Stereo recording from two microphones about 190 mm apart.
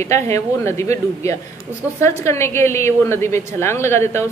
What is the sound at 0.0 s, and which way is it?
A woman's voice, 15° left (ahead or behind).